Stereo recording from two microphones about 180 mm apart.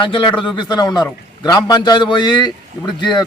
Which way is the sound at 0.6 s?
20° left (ahead or behind).